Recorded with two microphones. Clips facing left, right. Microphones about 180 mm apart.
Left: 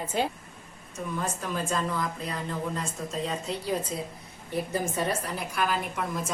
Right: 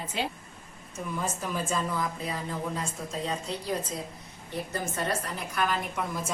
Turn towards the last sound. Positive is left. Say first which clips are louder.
# left 1 dB
turn(degrees=0)  # may be behind; listen again after turning